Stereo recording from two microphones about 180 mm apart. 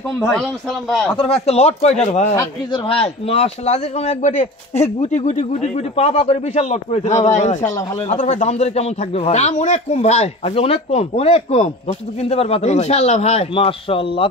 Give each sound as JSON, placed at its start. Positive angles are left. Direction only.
{"t": 0.3, "sound": "a man's voice", "side_deg": 0}
{"t": 1.1, "sound": "a man's voice", "side_deg": 35}